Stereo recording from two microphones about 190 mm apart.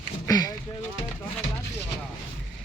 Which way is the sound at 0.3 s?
20° left (ahead or behind).